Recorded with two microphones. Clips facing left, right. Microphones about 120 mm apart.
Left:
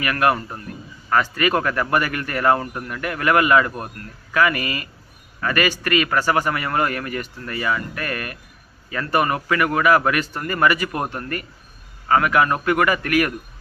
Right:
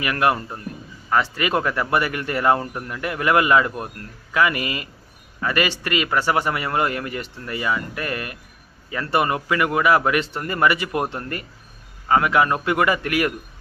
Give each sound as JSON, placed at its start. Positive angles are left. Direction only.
{"t": 0.0, "sound": "a man's voice", "side_deg": -20}